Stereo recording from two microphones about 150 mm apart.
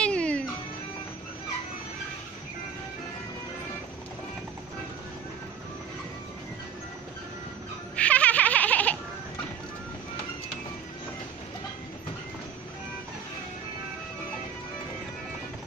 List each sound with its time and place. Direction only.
0.0 s music: 5° left (ahead or behind)
7.9 s music: 10° left (ahead or behind)